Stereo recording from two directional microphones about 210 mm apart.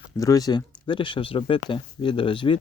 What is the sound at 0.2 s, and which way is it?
Speech, 15° left (ahead or behind).